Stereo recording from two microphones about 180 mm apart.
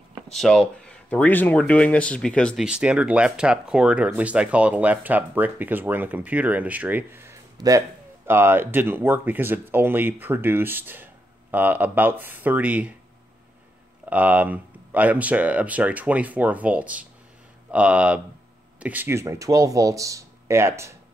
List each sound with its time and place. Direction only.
0.3 s speech: 5° left (ahead or behind)
14.0 s speech: 10° right (ahead or behind)